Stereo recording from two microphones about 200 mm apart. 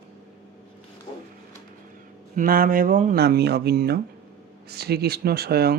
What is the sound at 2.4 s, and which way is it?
Speech, 45° right (ahead or behind).